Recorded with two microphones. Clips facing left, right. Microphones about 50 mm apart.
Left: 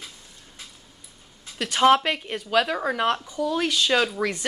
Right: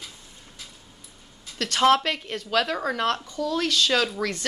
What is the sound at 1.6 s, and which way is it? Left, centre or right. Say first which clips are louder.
Speech: left 2 dB; centre.